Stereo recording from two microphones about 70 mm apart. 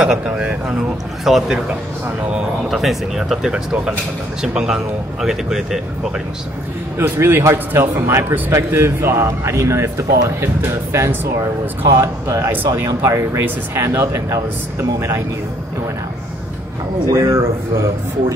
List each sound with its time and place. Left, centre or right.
0.0 s speech: centre
1.7 s speech: centre
2.7 s speech: centre
7.0 s a man's voice: right
12.6 s speech: right
13.4 s a man's voice: right
17.1 s speech: right